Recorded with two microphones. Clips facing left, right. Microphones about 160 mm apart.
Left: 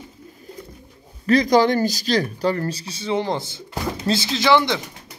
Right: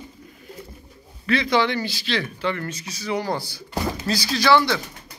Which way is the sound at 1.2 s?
40° left (ahead or behind).